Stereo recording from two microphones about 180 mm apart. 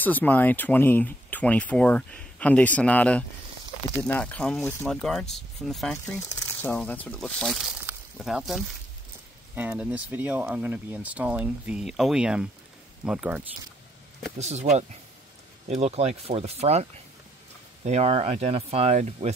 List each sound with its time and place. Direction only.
0.0 s speech: 10° left (ahead or behind)
6.2 s speech: 15° left (ahead or behind)
7.8 s a sound: 5° right (ahead or behind)
9.6 s speech: 10° right (ahead or behind)
14.4 s speech: 40° right (ahead or behind)
17.8 s speech: 35° right (ahead or behind)